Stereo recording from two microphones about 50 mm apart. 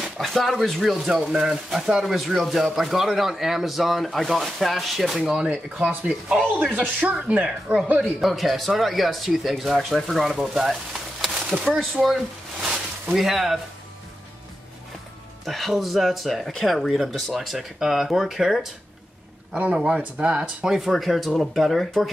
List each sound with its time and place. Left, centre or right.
0.2 s speech: centre
5.2 s speech: centre
6.7 s speech: right
7.4 s speech: centre
8.2 s speech: centre
10.4 s a sound: centre
11.3 s a sound: centre
11.7 s speech: centre
15.4 s speech: centre
19.5 s speech: right
20.7 s speech: centre